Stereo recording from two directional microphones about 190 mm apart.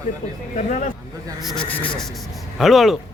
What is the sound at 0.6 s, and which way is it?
Speech, 40° left (ahead or behind).